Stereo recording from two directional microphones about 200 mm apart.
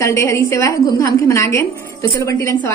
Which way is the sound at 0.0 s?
15° left (ahead or behind).